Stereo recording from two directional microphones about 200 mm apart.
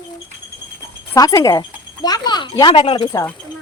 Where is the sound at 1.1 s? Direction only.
15° left (ahead or behind).